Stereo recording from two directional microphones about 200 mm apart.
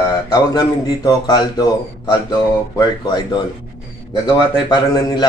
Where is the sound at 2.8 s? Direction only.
20° left (ahead or behind).